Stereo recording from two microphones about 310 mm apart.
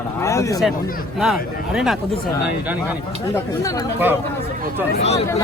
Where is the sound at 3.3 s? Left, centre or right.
Centre.